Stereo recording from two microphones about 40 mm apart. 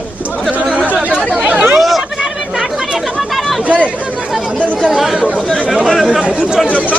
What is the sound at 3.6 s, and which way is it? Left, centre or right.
Chatter, right.